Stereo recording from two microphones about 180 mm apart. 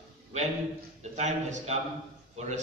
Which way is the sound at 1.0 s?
40° right (ahead or behind).